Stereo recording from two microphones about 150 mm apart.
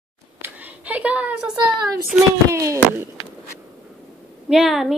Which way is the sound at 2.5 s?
20° right (ahead or behind).